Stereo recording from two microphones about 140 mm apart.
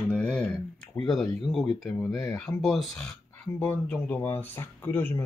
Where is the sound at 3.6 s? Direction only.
10° left (ahead or behind).